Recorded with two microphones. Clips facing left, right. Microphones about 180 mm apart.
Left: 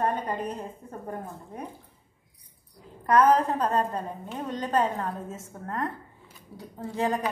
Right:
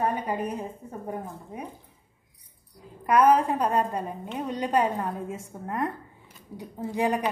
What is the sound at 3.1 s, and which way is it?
A woman's voice, 10° right (ahead or behind).